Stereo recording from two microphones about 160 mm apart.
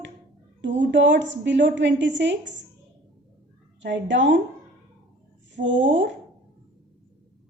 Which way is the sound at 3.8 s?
90° right.